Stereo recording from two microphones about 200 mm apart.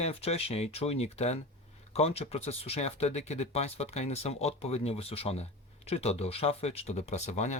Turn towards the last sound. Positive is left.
turn(degrees=35)  # may be behind; listen again after turning